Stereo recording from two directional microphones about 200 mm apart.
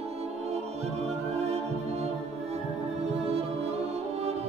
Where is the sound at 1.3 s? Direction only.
30° right (ahead or behind).